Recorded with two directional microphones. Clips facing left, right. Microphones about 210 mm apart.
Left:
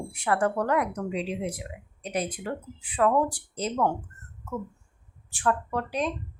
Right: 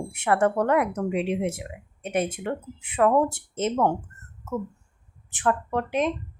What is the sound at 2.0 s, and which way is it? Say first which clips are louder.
Speech: right 4 dB; 25° right (ahead or behind).